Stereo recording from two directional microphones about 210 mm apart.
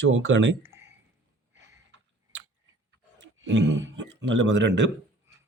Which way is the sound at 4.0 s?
55° right (ahead or behind).